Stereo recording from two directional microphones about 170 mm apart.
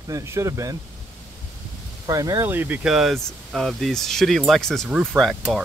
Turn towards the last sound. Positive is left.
turn(degrees=0)  # may be behind; listen again after turning